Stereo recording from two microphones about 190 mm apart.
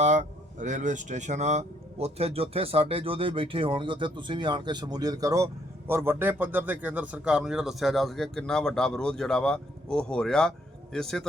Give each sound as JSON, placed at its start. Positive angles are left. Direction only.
{"t": 0.0, "sound": "speech", "side_deg": -40}